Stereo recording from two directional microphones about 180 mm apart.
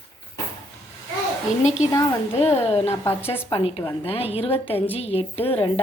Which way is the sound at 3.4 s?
30° left (ahead or behind).